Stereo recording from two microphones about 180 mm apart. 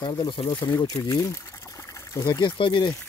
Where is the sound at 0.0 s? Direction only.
25° left (ahead or behind).